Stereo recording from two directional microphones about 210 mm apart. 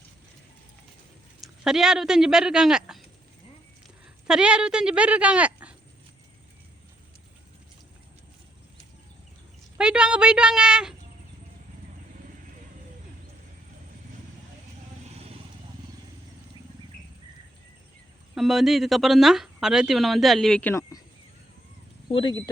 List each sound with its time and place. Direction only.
1.4 s speech: centre (ahead or behind)
4.3 s speech: 5° right (ahead or behind)
9.7 s a woman's voice: 5° right (ahead or behind)
18.3 s speech: centre (ahead or behind)
22.1 s speech: 25° left (ahead or behind)